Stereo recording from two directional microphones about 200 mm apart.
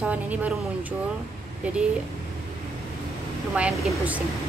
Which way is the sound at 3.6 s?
5° right (ahead or behind).